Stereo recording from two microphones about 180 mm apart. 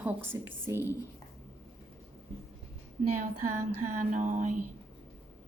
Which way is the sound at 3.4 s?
45° right (ahead or behind).